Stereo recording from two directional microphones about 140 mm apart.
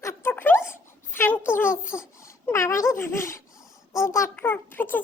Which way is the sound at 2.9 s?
20° left (ahead or behind).